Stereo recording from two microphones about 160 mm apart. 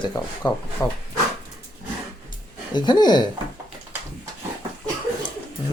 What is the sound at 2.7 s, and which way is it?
Speech, 25° left (ahead or behind).